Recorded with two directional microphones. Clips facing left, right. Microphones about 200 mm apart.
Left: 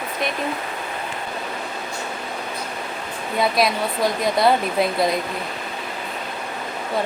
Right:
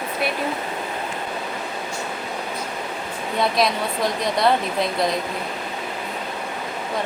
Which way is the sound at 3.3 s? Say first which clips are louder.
Left 1 dB; centre (ahead or behind).